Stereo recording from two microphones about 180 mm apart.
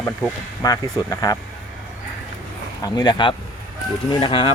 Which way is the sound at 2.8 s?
20° left (ahead or behind).